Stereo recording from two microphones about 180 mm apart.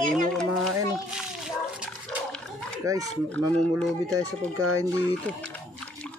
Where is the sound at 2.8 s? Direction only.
20° right (ahead or behind).